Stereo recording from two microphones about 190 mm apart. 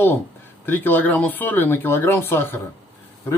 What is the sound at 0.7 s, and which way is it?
Speech, 10° left (ahead or behind).